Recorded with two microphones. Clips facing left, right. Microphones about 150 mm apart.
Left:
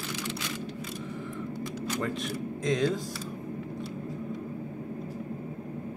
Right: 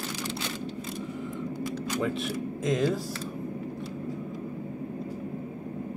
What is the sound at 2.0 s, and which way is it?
Speech, 5° right (ahead or behind).